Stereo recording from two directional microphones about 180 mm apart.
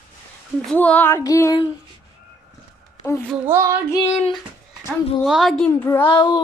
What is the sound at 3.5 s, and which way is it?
Child singing, 15° right (ahead or behind).